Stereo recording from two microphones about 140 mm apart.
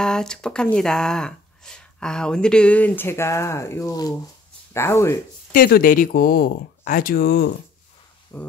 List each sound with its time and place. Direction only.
0.0 s speech: 5° left (ahead or behind)
5.5 s speech: 90° left
8.3 s speech: 15° left (ahead or behind)